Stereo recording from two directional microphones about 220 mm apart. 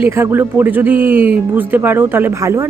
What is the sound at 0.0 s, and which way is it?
Speech, 10° right (ahead or behind).